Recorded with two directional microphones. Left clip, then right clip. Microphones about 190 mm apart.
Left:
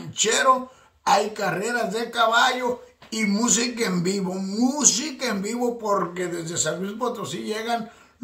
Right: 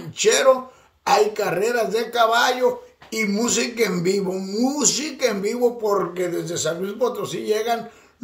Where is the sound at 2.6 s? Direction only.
30° left (ahead or behind).